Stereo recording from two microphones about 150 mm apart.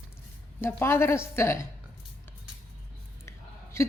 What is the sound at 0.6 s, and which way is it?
A woman's voice, 15° left (ahead or behind).